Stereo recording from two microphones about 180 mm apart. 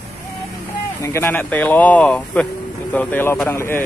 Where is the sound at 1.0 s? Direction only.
15° left (ahead or behind).